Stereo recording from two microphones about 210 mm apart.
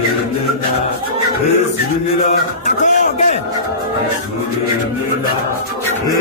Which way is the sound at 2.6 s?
35° left (ahead or behind).